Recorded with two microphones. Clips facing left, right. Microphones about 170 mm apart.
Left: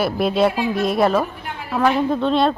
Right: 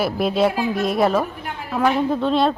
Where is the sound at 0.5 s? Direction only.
45° right (ahead or behind).